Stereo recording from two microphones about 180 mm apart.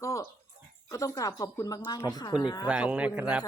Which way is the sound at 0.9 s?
20° left (ahead or behind).